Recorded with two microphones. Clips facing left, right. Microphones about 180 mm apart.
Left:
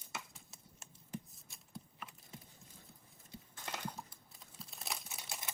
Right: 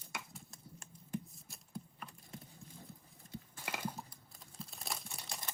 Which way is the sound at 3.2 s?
5° left (ahead or behind).